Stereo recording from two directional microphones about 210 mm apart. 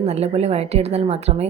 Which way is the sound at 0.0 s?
30° right (ahead or behind).